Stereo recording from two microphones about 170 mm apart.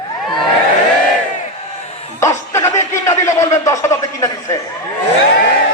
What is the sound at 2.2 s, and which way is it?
A man's voice, 15° left (ahead or behind).